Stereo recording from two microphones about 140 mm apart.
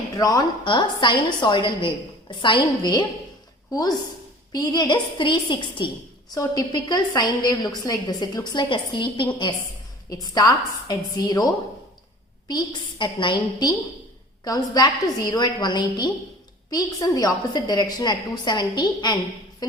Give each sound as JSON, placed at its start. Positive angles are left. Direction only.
{"t": 0.2, "sound": "a woman's voice", "side_deg": 25}
{"t": 4.5, "sound": "a woman's voice", "side_deg": 30}
{"t": 12.5, "sound": "a woman's voice", "side_deg": 30}